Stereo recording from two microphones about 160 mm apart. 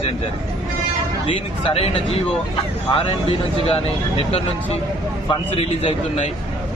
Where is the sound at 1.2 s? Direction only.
35° left (ahead or behind).